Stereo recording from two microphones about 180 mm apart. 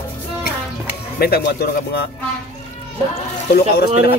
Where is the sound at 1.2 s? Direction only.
60° left (ahead or behind).